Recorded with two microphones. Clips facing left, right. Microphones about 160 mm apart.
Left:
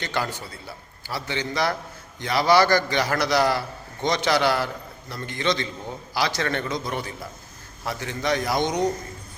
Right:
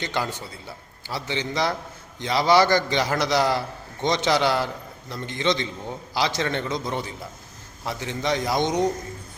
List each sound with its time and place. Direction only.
0.0 s a man's voice: 20° right (ahead or behind)